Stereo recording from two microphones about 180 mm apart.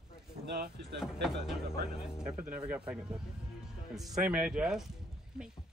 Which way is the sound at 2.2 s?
5° right (ahead or behind).